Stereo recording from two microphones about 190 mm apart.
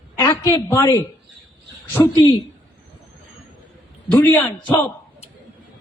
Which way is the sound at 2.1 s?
25° left (ahead or behind).